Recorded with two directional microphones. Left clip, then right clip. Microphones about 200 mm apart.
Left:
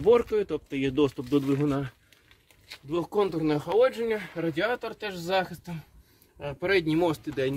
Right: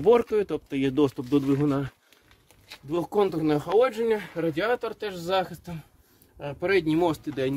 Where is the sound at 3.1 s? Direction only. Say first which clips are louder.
Right 3 dB; 40° right (ahead or behind); by 4.7 s 55° right (ahead or behind).